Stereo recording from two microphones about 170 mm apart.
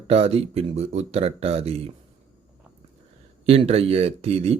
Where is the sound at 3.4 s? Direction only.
35° right (ahead or behind).